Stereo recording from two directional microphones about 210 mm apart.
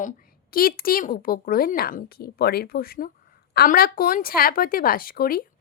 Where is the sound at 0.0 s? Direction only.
45° left (ahead or behind).